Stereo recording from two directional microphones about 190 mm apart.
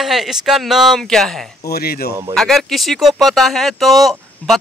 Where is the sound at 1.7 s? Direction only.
55° left (ahead or behind).